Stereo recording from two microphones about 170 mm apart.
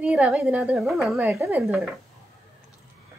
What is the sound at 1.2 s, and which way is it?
Speech, 15° right (ahead or behind).